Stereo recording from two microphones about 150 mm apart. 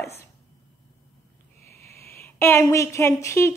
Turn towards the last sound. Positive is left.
turn(degrees=20)  # may be behind; listen again after turning